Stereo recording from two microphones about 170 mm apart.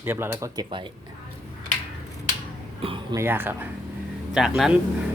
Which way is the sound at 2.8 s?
30° right (ahead or behind).